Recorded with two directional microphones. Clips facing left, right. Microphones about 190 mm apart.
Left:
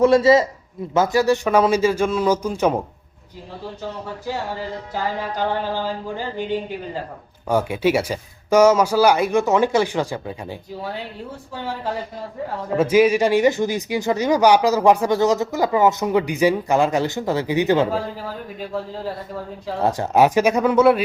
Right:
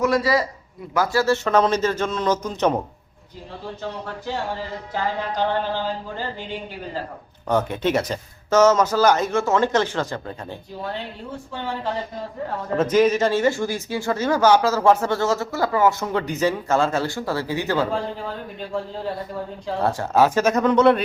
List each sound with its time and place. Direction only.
0.0 s a man's voice: 25° left (ahead or behind); by 2.8 s 10° left (ahead or behind)
5.4 s speech: 10° left (ahead or behind)
7.4 s speech: 10° left (ahead or behind)
17.9 s speech: 5° left (ahead or behind)
19.8 s speech: 20° left (ahead or behind)